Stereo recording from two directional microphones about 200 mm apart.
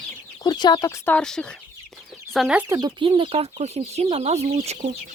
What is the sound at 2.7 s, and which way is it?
Speech, 20° right (ahead or behind).